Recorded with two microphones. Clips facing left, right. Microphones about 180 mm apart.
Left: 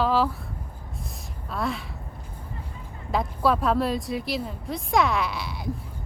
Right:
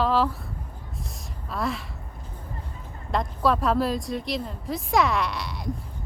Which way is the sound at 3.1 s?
5° left (ahead or behind).